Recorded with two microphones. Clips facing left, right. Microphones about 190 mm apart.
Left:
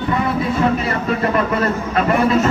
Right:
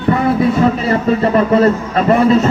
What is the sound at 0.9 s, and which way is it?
A man's voice, 30° right (ahead or behind).